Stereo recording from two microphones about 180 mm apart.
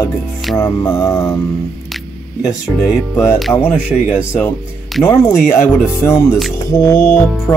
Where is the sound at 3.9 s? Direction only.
5° right (ahead or behind).